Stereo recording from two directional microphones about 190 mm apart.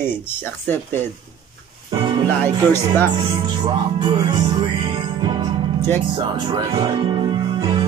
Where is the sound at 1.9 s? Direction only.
25° right (ahead or behind).